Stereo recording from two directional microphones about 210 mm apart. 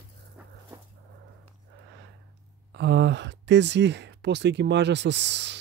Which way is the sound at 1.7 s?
55° right (ahead or behind).